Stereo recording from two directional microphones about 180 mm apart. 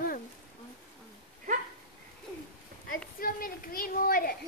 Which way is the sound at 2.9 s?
55° left (ahead or behind).